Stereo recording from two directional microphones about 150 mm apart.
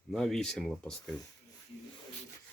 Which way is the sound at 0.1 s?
Centre (ahead or behind).